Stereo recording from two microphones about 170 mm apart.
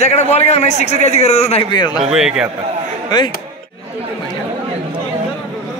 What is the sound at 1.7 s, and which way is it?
Speech, 25° left (ahead or behind).